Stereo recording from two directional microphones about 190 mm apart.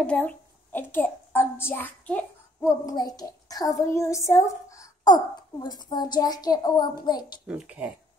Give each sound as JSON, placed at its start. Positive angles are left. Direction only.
{"t": 0.0, "sound": "a child's voice", "side_deg": 5}
{"t": 7.4, "sound": "speech", "side_deg": -5}